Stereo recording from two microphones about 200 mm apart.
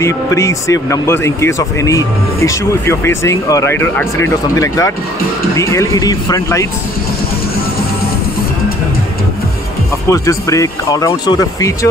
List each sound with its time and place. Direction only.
0.0 s speech: 15° left (ahead or behind)
10.0 s speech: 15° left (ahead or behind)